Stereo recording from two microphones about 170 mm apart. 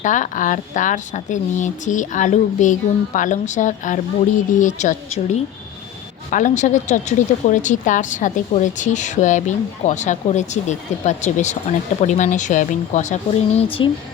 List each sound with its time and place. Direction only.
0.0 s a woman's voice: 50° left (ahead or behind)
13.6 s speech: 30° left (ahead or behind)